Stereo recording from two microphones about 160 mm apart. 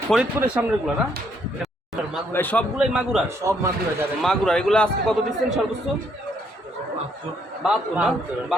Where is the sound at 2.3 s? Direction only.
10° left (ahead or behind).